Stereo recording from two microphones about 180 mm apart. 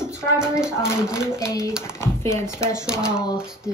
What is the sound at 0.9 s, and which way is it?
Speech, 15° left (ahead or behind).